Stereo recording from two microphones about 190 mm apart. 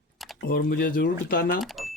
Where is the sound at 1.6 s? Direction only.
Centre (ahead or behind).